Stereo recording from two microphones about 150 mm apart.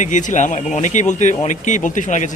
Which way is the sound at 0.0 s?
55° left (ahead or behind).